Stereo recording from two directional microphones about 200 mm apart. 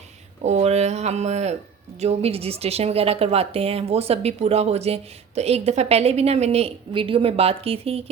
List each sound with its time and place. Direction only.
0.4 s a woman's voice: 35° right (ahead or behind)